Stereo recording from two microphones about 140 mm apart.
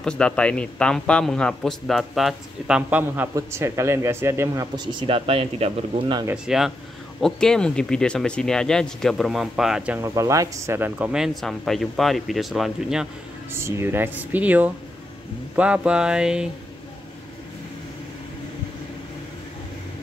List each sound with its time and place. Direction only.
0.0 s a man's voice: 5° left (ahead or behind); by 4.6 s 20° right (ahead or behind)
4.7 s speech: 40° right (ahead or behind)
6.3 s a man's voice: 5° right (ahead or behind)
9.9 s a man's voice: 20° right (ahead or behind); by 13.1 s centre (ahead or behind)
13.5 s speech: 20° right (ahead or behind)